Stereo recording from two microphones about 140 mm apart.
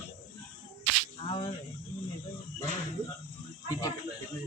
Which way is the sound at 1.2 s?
40° left (ahead or behind).